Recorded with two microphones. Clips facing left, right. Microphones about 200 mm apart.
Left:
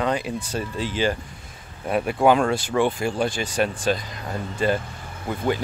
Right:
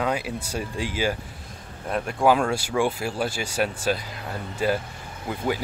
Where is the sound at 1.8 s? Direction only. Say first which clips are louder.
Left 2 dB; 5° left (ahead or behind).